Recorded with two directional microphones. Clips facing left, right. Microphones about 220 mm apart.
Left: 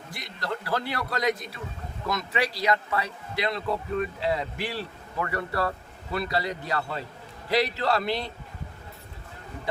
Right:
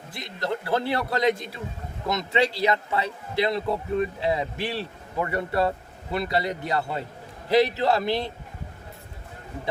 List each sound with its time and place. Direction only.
0.1 s a man's voice: 25° right (ahead or behind)